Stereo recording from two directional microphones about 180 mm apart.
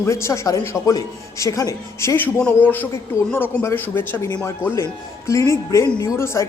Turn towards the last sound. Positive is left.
turn(degrees=15)  # may be behind; listen again after turning